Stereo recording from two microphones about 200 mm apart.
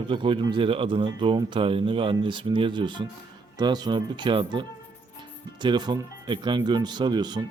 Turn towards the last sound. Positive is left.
turn(degrees=-20)  # may be behind; listen again after turning